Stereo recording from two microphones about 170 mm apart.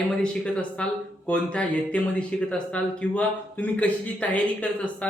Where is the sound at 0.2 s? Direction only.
5° left (ahead or behind).